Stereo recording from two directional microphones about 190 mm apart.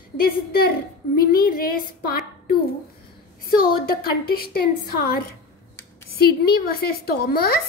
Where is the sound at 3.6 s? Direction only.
50° left (ahead or behind).